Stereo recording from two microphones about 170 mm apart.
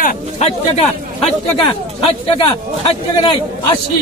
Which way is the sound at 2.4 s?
35° left (ahead or behind).